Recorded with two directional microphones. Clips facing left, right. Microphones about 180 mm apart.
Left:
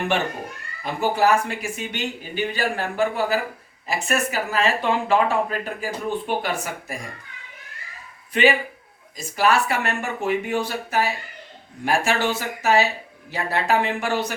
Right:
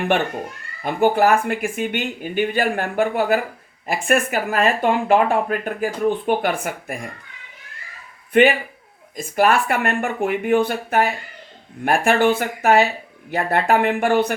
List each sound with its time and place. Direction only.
0.8 s speech: 55° right (ahead or behind)
8.3 s a man's voice: 55° right (ahead or behind)